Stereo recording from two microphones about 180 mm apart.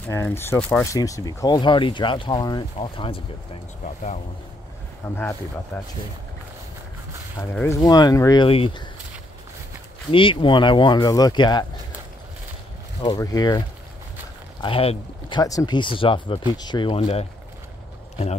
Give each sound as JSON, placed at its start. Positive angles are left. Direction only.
{"t": 0.1, "sound": "speech", "side_deg": 15}
{"t": 0.9, "sound": "speech", "side_deg": 20}
{"t": 3.8, "sound": "speech", "side_deg": 40}
{"t": 5.0, "sound": "speech", "side_deg": 15}
{"t": 7.5, "sound": "speech", "side_deg": 15}
{"t": 10.1, "sound": "speech", "side_deg": 30}
{"t": 13.0, "sound": "speech", "side_deg": 20}